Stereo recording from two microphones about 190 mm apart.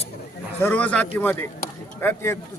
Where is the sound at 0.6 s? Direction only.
10° left (ahead or behind).